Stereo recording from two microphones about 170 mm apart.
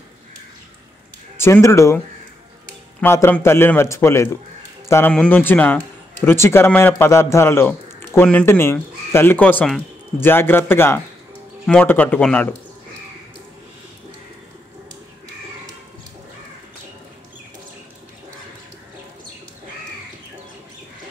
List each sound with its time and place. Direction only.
1.4 s speech: 15° left (ahead or behind)
3.0 s speech: 15° left (ahead or behind)